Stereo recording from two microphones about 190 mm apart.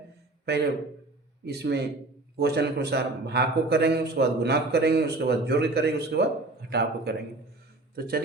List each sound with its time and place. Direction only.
1.5 s a man's voice: 60° right (ahead or behind)